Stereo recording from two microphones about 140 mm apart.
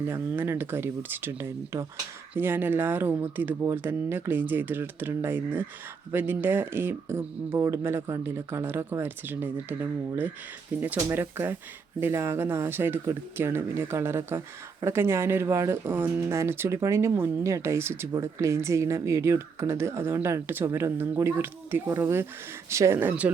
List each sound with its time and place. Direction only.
0.0 s speech: 15° right (ahead or behind)